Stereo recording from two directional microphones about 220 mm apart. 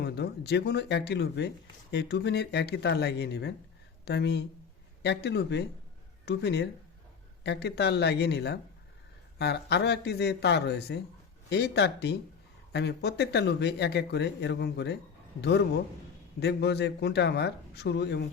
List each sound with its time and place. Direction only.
0.0 s speech: 50° left (ahead or behind)